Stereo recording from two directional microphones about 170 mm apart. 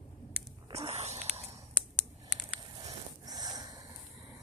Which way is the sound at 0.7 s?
40° right (ahead or behind).